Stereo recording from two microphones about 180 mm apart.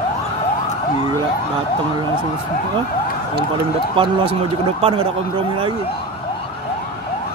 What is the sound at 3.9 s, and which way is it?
Speech, 30° right (ahead or behind).